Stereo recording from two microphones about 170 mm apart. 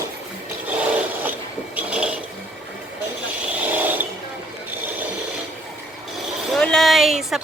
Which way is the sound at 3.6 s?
10° right (ahead or behind).